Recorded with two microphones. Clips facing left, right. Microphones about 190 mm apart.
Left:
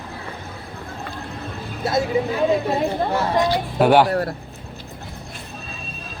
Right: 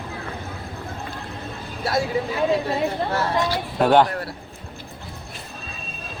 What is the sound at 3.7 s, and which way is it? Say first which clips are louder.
Speech: left 1 dB; 5° left (ahead or behind).